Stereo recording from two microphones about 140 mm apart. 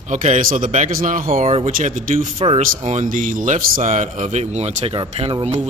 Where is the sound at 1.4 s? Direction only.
45° right (ahead or behind).